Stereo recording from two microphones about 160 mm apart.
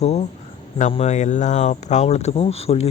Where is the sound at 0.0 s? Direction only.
45° left (ahead or behind).